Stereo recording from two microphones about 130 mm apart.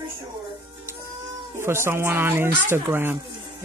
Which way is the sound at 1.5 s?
20° right (ahead or behind).